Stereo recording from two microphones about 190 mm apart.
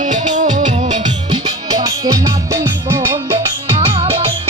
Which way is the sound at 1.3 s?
20° right (ahead or behind).